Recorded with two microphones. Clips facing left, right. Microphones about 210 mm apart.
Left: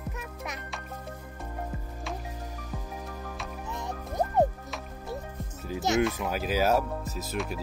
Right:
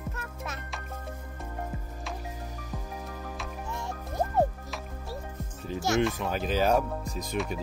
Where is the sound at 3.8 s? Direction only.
20° left (ahead or behind).